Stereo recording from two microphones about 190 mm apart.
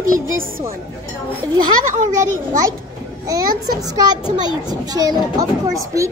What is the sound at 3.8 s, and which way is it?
A child's voice, 20° right (ahead or behind).